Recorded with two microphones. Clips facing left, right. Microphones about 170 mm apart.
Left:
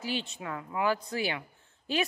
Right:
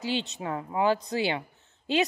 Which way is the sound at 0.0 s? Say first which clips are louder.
Right 4 dB; 25° right (ahead or behind).